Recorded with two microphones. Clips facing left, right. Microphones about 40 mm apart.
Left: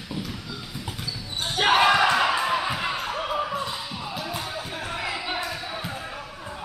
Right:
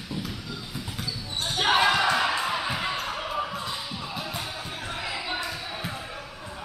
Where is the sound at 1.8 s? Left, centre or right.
Left.